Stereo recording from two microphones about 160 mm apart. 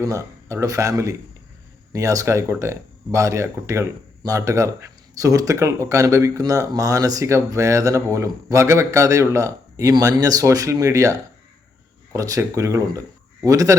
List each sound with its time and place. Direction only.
0.0 s speech: 20° right (ahead or behind)